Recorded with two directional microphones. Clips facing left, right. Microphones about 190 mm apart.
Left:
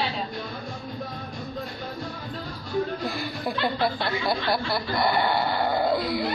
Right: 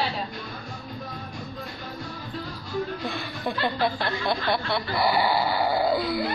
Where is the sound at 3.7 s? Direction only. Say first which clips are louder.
Even; 5° left (ahead or behind).